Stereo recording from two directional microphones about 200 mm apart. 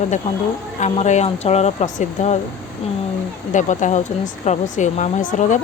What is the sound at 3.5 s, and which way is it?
A woman's voice, 40° left (ahead or behind).